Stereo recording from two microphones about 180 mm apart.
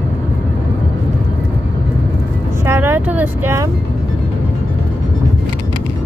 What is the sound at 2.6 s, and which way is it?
Speech, 10° right (ahead or behind).